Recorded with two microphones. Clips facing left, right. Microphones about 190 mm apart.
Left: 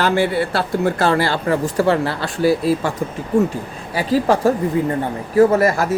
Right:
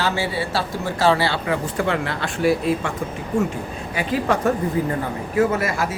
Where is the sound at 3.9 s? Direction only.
35° left (ahead or behind).